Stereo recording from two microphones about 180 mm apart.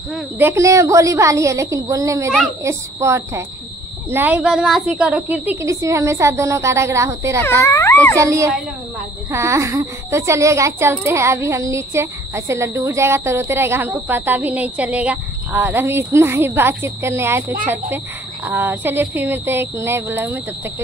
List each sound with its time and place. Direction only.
0.4 s a child's voice: 15° right (ahead or behind)
7.6 s a child's voice: 15° left (ahead or behind)
8.2 s a child's voice: 15° right (ahead or behind)